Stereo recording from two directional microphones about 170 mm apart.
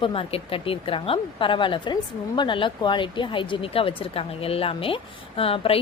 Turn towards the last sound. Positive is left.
turn(degrees=35)  # may be behind; listen again after turning